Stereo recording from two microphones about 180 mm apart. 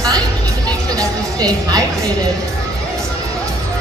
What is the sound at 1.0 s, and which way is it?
Speech, 20° right (ahead or behind).